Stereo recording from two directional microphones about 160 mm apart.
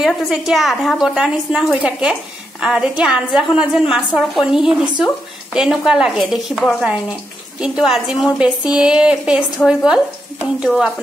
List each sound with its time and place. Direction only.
0.0 s a woman's voice: centre (ahead or behind)
7.6 s a woman's voice: 5° right (ahead or behind)
9.6 s a woman's voice: 5° left (ahead or behind)